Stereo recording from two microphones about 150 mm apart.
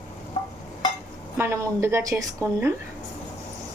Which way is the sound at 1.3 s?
15° right (ahead or behind).